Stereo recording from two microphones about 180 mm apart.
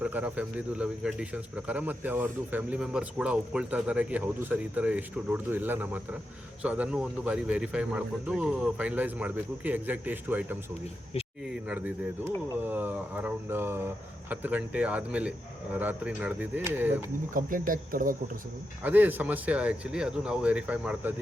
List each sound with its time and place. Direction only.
0.0 s speech: 10° right (ahead or behind)
12.6 s speech: 10° right (ahead or behind)
17.3 s speech: 50° right (ahead or behind)
18.8 s speech: 10° right (ahead or behind)